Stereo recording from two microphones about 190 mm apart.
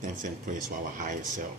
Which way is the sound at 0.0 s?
45° right (ahead or behind).